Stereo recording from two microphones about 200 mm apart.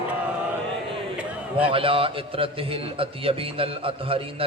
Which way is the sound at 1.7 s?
25° right (ahead or behind).